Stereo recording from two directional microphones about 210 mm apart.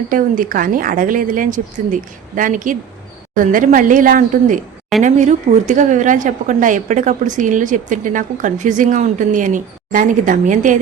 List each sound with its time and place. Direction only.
0.1 s a woman's voice: 40° right (ahead or behind)